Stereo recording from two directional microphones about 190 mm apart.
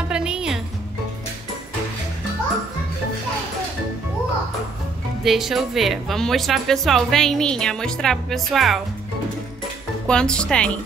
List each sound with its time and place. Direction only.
0.1 s music: 5° right (ahead or behind)
5.2 s a woman's voice: centre (ahead or behind)
10.0 s a woman's voice: 5° left (ahead or behind)